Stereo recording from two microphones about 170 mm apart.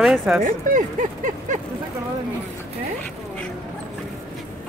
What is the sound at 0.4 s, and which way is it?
Speech, 50° right (ahead or behind).